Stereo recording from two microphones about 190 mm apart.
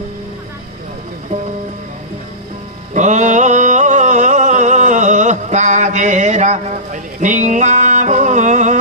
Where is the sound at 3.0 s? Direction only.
40° right (ahead or behind).